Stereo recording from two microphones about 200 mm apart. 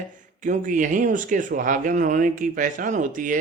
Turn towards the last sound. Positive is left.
turn(degrees=-40)  # may be behind; listen again after turning